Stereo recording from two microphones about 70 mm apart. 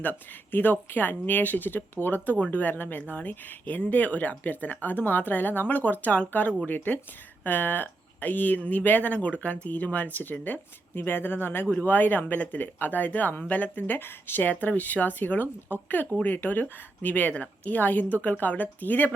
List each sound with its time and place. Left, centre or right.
0.0 s speech: left